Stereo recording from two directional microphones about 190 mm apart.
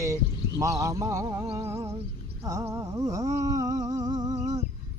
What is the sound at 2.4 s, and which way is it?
Humming, 15° right (ahead or behind).